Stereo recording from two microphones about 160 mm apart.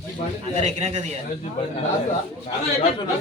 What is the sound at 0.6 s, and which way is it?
Speech, 45° right (ahead or behind).